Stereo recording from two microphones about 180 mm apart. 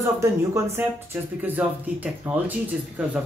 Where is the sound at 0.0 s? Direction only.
15° right (ahead or behind).